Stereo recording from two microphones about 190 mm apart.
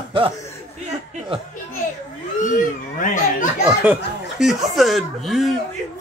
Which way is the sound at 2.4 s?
45° left (ahead or behind).